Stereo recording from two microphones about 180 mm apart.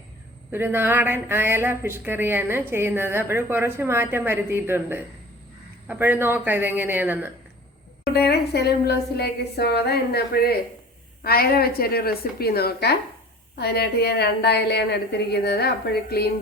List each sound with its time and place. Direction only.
0.5 s speech: 10° right (ahead or behind)
8.1 s a woman's voice: 65° left (ahead or behind)